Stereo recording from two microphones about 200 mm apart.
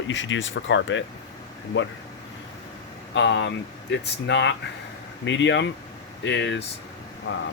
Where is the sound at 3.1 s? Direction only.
65° left (ahead or behind).